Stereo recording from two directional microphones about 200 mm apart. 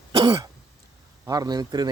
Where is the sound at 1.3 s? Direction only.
20° right (ahead or behind).